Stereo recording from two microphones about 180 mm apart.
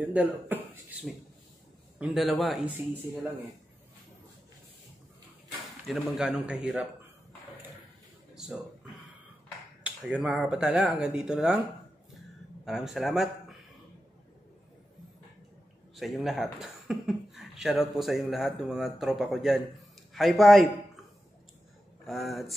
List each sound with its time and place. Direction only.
0.0 s speech: 10° right (ahead or behind)
5.9 s speech: 5° right (ahead or behind)
9.8 s speech: 5° right (ahead or behind)
12.6 s speech: centre (ahead or behind)
16.0 s a man's voice: centre (ahead or behind)
22.0 s speech: centre (ahead or behind)